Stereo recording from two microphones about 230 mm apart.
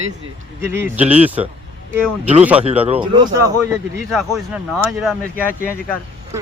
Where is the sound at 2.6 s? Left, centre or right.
Right.